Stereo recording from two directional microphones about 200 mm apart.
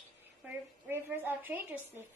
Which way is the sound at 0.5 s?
10° right (ahead or behind).